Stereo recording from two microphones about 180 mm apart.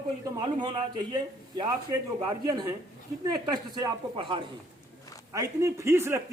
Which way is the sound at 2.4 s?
25° right (ahead or behind).